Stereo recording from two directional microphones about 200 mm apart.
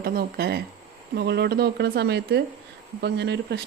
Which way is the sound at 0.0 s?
50° right (ahead or behind).